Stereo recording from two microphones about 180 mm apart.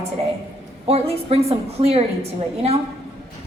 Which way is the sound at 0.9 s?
35° right (ahead or behind).